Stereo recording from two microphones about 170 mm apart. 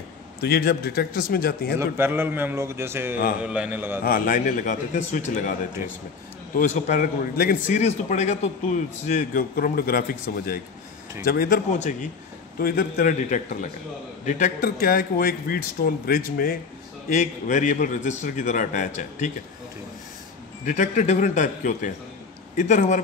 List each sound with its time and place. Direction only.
0.4 s a man's voice: 70° left (ahead or behind)
1.8 s a man's voice: 15° right (ahead or behind)
4.0 s a man's voice: 55° left (ahead or behind)
6.5 s a man's voice: 45° left (ahead or behind)
17.1 s a man's voice: 45° left (ahead or behind)
20.6 s a man's voice: 50° left (ahead or behind)